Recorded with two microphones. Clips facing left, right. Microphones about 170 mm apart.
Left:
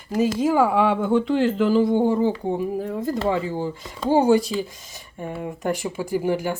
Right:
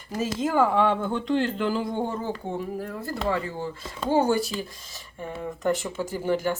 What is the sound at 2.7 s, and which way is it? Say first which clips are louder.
Speech: left 6 dB; 15° left (ahead or behind).